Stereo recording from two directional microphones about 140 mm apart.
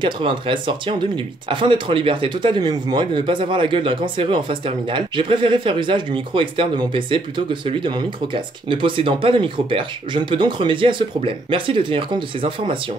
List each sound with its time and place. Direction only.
0.0 s speech: 35° right (ahead or behind)